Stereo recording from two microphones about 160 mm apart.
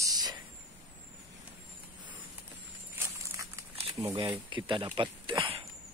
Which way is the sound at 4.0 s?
30° right (ahead or behind).